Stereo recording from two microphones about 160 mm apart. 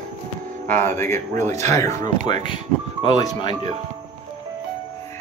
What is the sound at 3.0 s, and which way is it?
Speech, 30° left (ahead or behind).